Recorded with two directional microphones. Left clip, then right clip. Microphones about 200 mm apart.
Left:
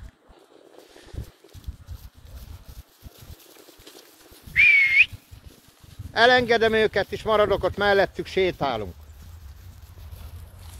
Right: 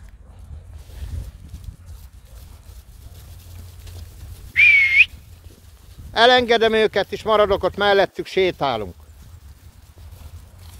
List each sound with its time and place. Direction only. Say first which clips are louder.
4.6 s whistling: right 3 dB; 20° right (ahead or behind)
6.1 s speech: right 4 dB; 20° right (ahead or behind)